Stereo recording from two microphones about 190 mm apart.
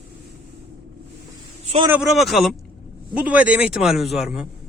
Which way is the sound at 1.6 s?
35° right (ahead or behind).